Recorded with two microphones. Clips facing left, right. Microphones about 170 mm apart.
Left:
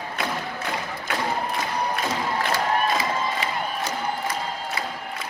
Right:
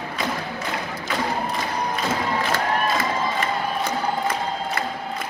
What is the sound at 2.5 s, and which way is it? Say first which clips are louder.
Crowd: left 1 dB; 50° right (ahead or behind).